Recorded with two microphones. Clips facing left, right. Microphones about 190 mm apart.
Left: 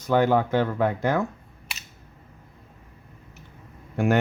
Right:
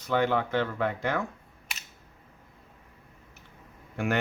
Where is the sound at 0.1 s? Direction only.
45° left (ahead or behind).